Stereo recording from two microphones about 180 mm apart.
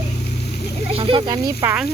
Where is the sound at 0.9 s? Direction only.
30° right (ahead or behind).